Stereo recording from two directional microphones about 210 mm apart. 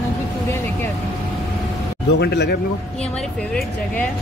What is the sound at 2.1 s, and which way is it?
Speech, 50° left (ahead or behind).